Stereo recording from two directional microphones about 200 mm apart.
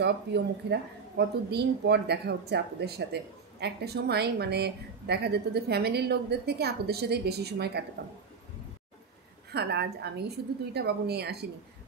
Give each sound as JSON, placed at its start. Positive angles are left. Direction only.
{"t": 0.0, "sound": "a woman's voice", "side_deg": -55}
{"t": 9.5, "sound": "a woman's voice", "side_deg": -55}